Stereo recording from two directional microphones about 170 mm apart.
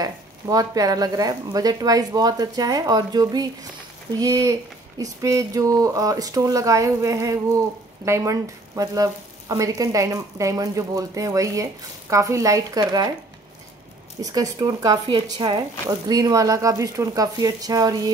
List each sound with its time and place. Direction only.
0.0 s speech: 20° right (ahead or behind)
14.2 s speech: 20° right (ahead or behind)